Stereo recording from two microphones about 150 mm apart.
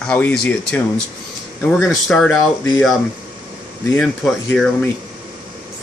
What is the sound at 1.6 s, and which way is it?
Speech, centre (ahead or behind).